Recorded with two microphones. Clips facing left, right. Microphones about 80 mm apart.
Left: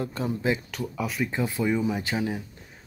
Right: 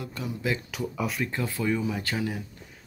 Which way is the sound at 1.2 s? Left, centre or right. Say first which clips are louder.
Left 5 dB; centre.